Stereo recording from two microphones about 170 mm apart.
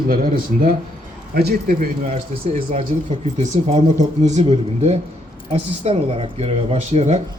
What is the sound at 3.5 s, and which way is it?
Speech, 40° right (ahead or behind).